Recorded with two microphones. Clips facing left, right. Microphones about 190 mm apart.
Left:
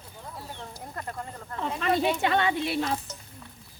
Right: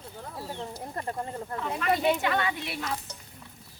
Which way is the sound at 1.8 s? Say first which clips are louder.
Even; 25° left (ahead or behind).